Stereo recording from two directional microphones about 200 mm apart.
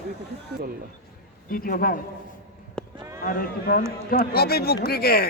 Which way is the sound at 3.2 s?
45° left (ahead or behind).